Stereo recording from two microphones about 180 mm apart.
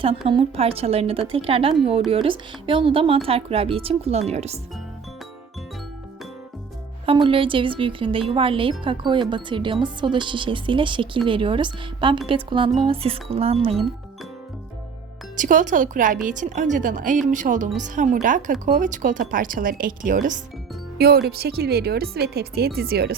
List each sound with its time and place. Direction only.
0.3 s speech: 30° right (ahead or behind)
7.0 s speech: 30° right (ahead or behind)
15.4 s a woman's voice: 45° right (ahead or behind)
21.0 s speech: 60° right (ahead or behind)